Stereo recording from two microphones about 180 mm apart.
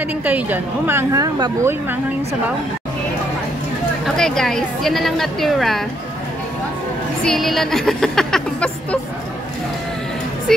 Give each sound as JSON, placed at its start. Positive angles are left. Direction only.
{"t": 0.2, "sound": "speech", "side_deg": -10}
{"t": 4.0, "sound": "a woman's voice", "side_deg": 5}
{"t": 7.2, "sound": "speech", "side_deg": 0}